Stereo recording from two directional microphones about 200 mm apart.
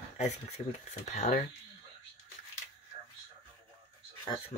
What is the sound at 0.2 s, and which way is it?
Speech, 35° left (ahead or behind).